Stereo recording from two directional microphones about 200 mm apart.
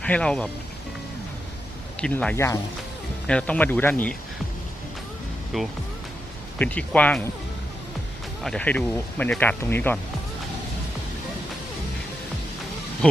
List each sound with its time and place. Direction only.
0.0 s speech: 5° left (ahead or behind)
2.0 s speech: 5° left (ahead or behind)
5.5 s speech: centre (ahead or behind)
8.4 s speech: 5° left (ahead or behind)